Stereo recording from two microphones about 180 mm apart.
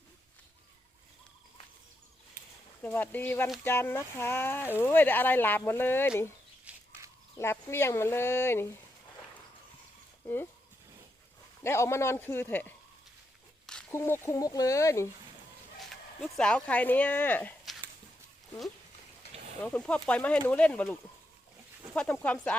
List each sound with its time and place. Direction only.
2.8 s speech: 10° left (ahead or behind)
6.7 s a sound: 5° right (ahead or behind)
7.3 s speech: 15° left (ahead or behind)
10.2 s speech: 10° left (ahead or behind)
11.6 s speech: 15° left (ahead or behind)
13.9 s speech: 15° left (ahead or behind)
15.8 s speech: centre (ahead or behind)
19.6 s speech: 5° left (ahead or behind)
21.9 s speech: 10° left (ahead or behind)